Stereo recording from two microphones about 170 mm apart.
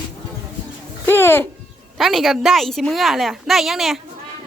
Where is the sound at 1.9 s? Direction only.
Centre (ahead or behind).